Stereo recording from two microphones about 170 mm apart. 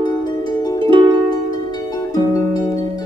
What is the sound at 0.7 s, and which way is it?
Music, 30° right (ahead or behind).